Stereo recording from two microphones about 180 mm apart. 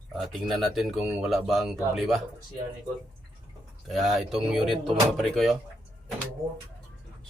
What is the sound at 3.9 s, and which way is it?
Speech, centre (ahead or behind).